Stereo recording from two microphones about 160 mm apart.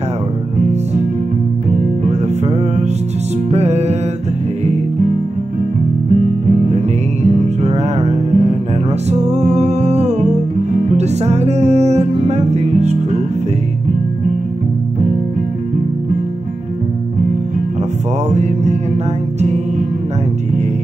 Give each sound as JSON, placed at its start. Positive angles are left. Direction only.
{"t": 3.4, "sound": "music", "side_deg": -40}
{"t": 7.4, "sound": "music", "side_deg": -40}
{"t": 18.3, "sound": "music", "side_deg": -45}